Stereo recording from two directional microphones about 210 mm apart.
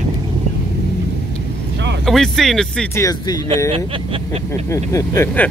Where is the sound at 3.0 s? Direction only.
15° left (ahead or behind).